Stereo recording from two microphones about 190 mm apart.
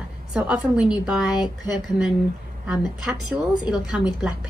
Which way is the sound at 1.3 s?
20° left (ahead or behind).